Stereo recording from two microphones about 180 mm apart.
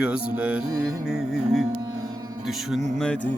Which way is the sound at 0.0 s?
5° right (ahead or behind).